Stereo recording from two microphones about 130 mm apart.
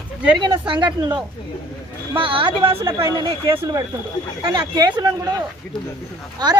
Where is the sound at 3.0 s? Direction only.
30° right (ahead or behind).